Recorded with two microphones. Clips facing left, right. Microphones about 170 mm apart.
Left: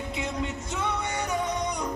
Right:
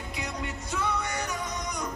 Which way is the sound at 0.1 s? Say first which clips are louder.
Left 3 dB; 25° left (ahead or behind).